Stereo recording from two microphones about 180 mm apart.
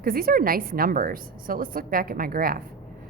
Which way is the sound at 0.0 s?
55° right (ahead or behind).